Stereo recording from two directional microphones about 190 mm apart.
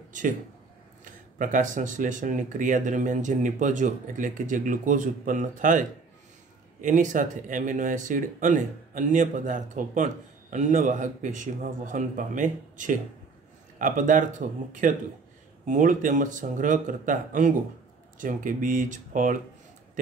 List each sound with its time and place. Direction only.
1.0 s speech: 45° right (ahead or behind)